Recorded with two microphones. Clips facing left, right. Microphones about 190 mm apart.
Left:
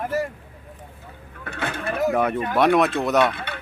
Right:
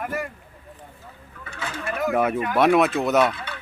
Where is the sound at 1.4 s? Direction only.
60° left (ahead or behind).